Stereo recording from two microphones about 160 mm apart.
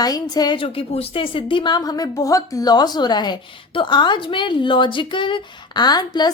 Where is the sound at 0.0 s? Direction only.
25° left (ahead or behind).